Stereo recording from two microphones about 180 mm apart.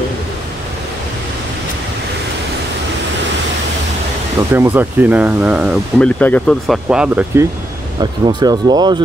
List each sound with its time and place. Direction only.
4.6 s speech: 10° right (ahead or behind)
5.9 s speech: 5° left (ahead or behind)
8.0 s speech: 25° right (ahead or behind)